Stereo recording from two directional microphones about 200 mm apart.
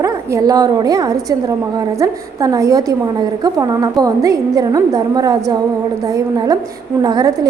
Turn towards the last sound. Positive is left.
turn(degrees=-20)  # may be behind; listen again after turning